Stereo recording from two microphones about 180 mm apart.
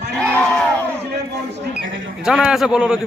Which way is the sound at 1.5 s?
80° right.